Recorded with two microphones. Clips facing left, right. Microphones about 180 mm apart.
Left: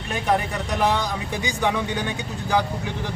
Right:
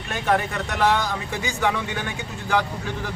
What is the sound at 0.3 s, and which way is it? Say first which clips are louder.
Speech: even; 15° left (ahead or behind).